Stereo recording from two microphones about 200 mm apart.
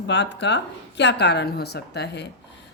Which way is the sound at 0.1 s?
65° left (ahead or behind).